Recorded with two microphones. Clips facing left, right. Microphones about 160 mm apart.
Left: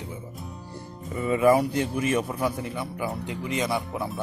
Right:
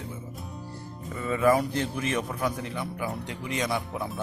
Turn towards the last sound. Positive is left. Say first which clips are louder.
# left 2 dB
turn(degrees=0)  # may be behind; listen again after turning